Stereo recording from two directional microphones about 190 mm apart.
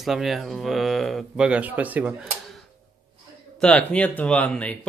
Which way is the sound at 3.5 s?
5° left (ahead or behind).